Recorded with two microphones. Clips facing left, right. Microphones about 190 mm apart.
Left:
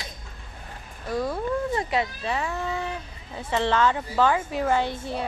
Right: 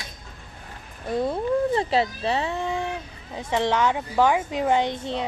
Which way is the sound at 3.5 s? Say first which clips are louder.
Even; 15° right (ahead or behind).